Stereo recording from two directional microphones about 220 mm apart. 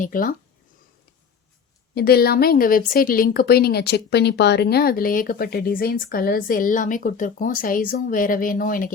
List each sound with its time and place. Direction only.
0.0 s speech: 40° left (ahead or behind)
2.0 s speech: 45° left (ahead or behind)